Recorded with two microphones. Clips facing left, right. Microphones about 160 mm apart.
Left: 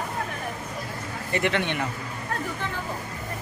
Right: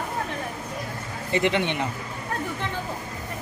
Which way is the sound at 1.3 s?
20° right (ahead or behind).